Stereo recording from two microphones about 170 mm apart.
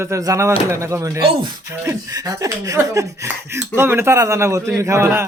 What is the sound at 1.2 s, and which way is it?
Speech, 30° right (ahead or behind).